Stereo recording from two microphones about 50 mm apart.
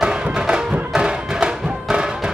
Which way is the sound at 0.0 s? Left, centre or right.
Centre.